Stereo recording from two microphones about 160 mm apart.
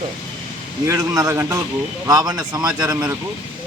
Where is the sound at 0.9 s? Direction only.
20° right (ahead or behind).